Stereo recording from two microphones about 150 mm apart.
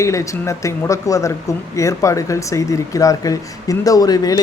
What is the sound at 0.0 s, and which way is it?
Speech, 20° left (ahead or behind).